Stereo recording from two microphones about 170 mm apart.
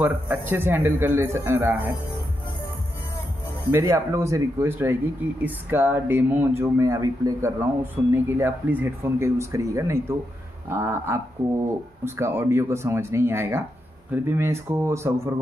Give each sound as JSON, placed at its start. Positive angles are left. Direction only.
{"t": 0.0, "sound": "speech", "side_deg": -10}
{"t": 3.7, "sound": "speech", "side_deg": -15}